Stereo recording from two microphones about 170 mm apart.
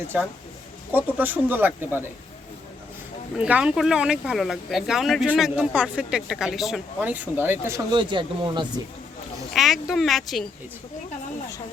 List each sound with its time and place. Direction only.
0.9 s speech: 10° right (ahead or behind)
3.3 s speech: 5° right (ahead or behind)
7.9 s speech: 30° right (ahead or behind)
9.5 s speech: centre (ahead or behind)